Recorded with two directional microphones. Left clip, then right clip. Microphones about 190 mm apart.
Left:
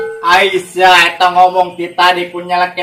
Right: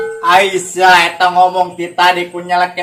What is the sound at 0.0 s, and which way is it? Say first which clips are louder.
Music: even; centre (ahead or behind).